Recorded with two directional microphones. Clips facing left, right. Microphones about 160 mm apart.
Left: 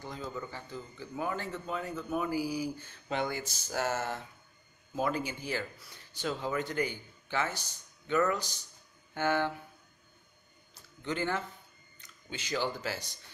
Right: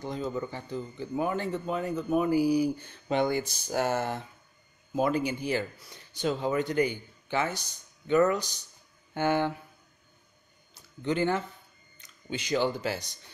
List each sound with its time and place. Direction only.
0.0 s speech: 20° right (ahead or behind)
9.1 s speech: 20° right (ahead or behind)
11.1 s speech: 20° right (ahead or behind)